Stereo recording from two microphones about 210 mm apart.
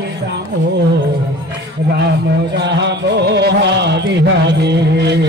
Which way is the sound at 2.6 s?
55° right (ahead or behind).